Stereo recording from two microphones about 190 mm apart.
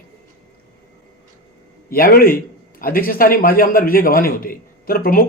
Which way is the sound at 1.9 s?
50° left (ahead or behind).